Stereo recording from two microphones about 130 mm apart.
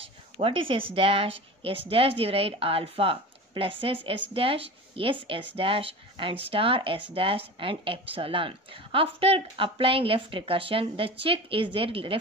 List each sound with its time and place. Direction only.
0.0 s a woman's voice: 45° right (ahead or behind)